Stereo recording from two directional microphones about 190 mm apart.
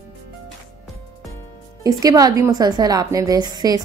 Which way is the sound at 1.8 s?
20° right (ahead or behind).